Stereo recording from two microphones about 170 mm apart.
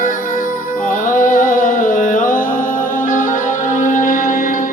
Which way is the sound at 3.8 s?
50° left (ahead or behind).